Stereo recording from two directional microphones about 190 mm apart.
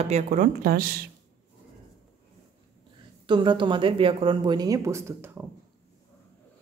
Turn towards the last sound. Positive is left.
turn(degrees=-15)  # may be behind; listen again after turning